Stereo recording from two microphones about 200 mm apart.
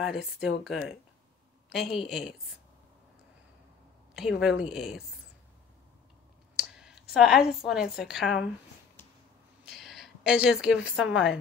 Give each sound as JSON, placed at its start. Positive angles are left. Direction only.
{"t": 0.0, "sound": "a woman's voice", "side_deg": 0}
{"t": 4.1, "sound": "a woman's voice", "side_deg": 0}
{"t": 6.5, "sound": "a sound", "side_deg": -5}
{"t": 7.9, "sound": "a woman's voice", "side_deg": 0}
{"t": 9.7, "sound": "a woman's voice", "side_deg": 0}